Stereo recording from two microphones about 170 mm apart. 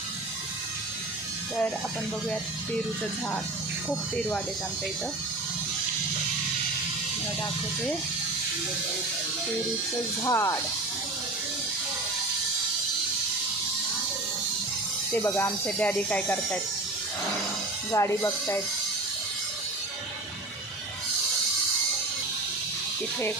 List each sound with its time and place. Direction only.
10.2 s speech: 15° left (ahead or behind)
15.1 s speech: 10° left (ahead or behind)
17.9 s speech: 15° left (ahead or behind)